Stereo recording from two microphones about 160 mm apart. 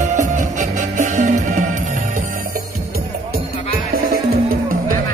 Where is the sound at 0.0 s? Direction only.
50° right (ahead or behind).